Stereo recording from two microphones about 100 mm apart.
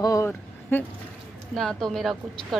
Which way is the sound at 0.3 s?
20° left (ahead or behind).